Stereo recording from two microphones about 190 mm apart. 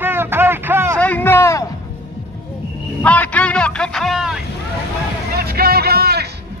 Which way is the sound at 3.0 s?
10° left (ahead or behind).